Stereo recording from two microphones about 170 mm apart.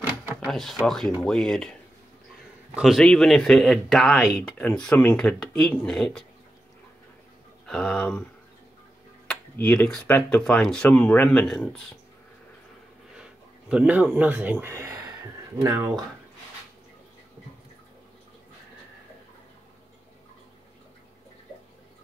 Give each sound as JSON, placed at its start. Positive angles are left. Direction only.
{"t": 0.4, "sound": "speech", "side_deg": 0}
{"t": 7.6, "sound": "speech", "side_deg": 5}
{"t": 9.3, "sound": "speech", "side_deg": 10}
{"t": 13.1, "sound": "a sound", "side_deg": -5}
{"t": 15.6, "sound": "speech", "side_deg": -15}